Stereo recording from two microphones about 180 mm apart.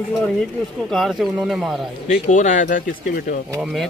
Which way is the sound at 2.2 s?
45° left (ahead or behind).